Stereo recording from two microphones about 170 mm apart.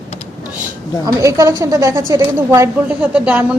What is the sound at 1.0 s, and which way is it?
A woman's voice, 20° right (ahead or behind).